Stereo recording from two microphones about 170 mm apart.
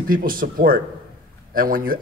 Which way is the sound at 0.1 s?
55° right (ahead or behind).